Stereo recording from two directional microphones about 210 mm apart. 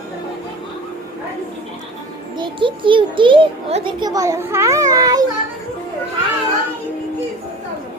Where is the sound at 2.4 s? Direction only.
25° right (ahead or behind).